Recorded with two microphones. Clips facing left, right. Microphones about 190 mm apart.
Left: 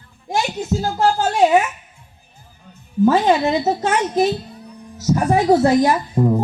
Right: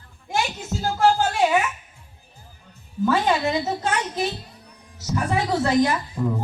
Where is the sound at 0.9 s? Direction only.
40° left (ahead or behind).